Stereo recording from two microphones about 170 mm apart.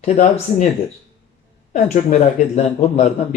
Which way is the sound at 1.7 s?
50° left (ahead or behind).